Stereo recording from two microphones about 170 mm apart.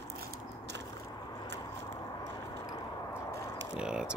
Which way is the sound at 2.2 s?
20° left (ahead or behind).